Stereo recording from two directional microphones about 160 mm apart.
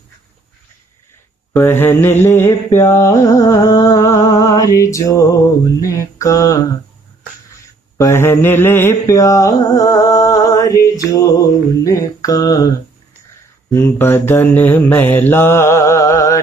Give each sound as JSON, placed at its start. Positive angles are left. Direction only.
{"t": 1.5, "sound": "mantra", "side_deg": 15}
{"t": 8.0, "sound": "mantra", "side_deg": 15}